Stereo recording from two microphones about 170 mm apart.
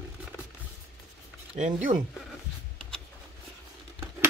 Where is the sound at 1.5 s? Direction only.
50° right (ahead or behind).